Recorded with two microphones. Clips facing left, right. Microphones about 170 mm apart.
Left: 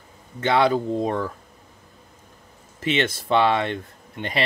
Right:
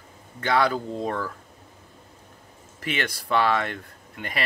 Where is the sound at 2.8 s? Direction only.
25° left (ahead or behind).